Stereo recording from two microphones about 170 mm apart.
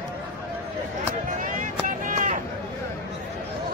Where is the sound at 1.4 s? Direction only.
50° right (ahead or behind).